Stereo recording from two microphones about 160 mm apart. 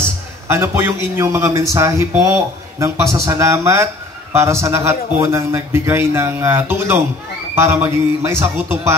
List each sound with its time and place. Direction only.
0.5 s speech: 15° right (ahead or behind)